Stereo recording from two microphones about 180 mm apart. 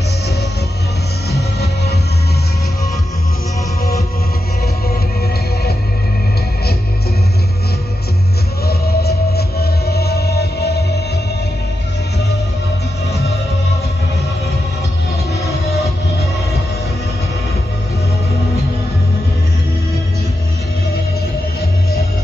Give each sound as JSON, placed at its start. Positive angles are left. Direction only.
{"t": 8.6, "sound": "music", "side_deg": 60}